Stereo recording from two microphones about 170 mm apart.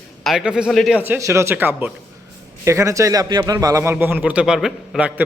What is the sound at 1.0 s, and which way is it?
A man's voice, 15° right (ahead or behind).